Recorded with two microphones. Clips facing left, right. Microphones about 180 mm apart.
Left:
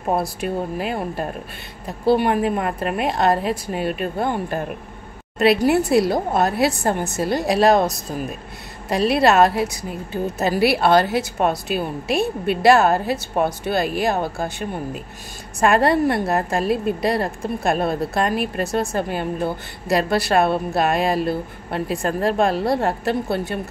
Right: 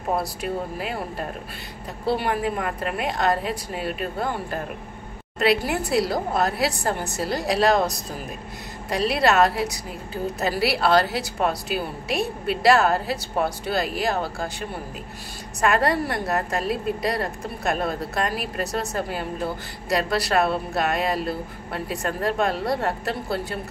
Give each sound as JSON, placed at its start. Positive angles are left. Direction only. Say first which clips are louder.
{"t": 0.1, "sound": "a woman's voice", "louder": "left 3 dB", "side_deg": 25}
{"t": 2.1, "sound": "a woman's voice", "louder": "left 6 dB", "side_deg": 25}
{"t": 5.7, "sound": "a woman's voice", "louder": "left 6 dB", "side_deg": 25}
{"t": 8.9, "sound": "a woman's voice", "louder": "left 4 dB", "side_deg": 25}
{"t": 15.6, "sound": "a woman's voice", "louder": "left 5 dB", "side_deg": 25}